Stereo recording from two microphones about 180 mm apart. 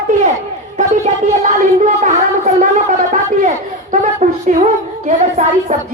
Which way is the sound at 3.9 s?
40° right (ahead or behind).